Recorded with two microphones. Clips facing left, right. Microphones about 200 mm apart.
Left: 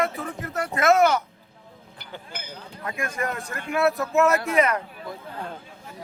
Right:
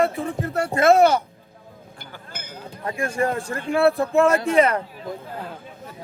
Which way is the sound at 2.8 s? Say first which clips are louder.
Right 6 dB; 30° right (ahead or behind).